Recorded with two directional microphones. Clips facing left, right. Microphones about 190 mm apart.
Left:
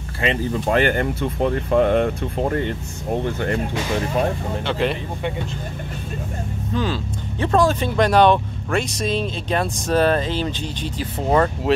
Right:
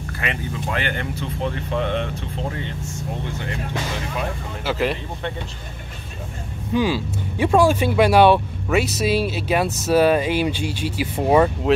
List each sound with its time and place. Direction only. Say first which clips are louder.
0.5 s speech: left 9 dB; 45° left (ahead or behind)
4.6 s speech: even; 5° right (ahead or behind)
6.7 s speech: right 4 dB; 10° right (ahead or behind)